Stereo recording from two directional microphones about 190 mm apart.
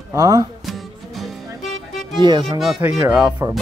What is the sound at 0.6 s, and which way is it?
Music, centre (ahead or behind).